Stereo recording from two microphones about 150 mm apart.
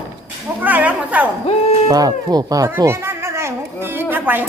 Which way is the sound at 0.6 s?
10° right (ahead or behind).